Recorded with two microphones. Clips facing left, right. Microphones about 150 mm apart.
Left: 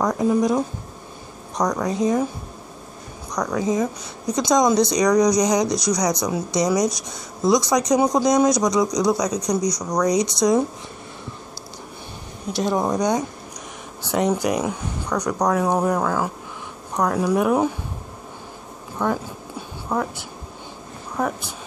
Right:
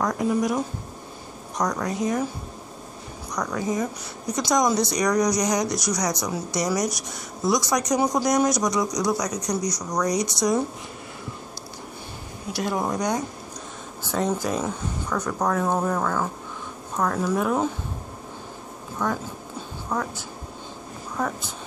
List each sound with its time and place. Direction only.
0.0 s speech: 25° left (ahead or behind)
1.6 s speech: 15° left (ahead or behind)
3.3 s speech: 15° left (ahead or behind)
12.5 s speech: 25° left (ahead or behind)
14.1 s speech: 15° left (ahead or behind)
19.0 s speech: 20° left (ahead or behind)